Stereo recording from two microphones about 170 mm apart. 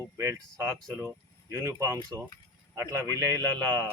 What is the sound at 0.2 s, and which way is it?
Speech, 15° right (ahead or behind).